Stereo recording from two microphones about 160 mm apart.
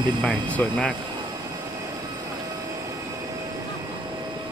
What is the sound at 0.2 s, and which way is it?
Speech, 10° left (ahead or behind).